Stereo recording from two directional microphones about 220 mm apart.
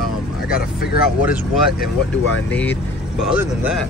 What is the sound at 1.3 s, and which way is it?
Speech, 5° right (ahead or behind).